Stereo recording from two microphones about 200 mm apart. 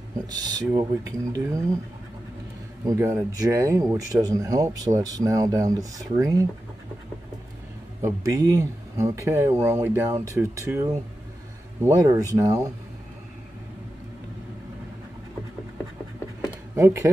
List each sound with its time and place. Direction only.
0.3 s speech: 20° right (ahead or behind)
2.8 s speech: 15° right (ahead or behind)
8.0 s speech: 15° right (ahead or behind)
16.7 s speech: 15° right (ahead or behind)